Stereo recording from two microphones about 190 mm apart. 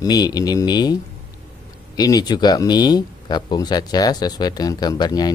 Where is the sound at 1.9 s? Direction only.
20° left (ahead or behind).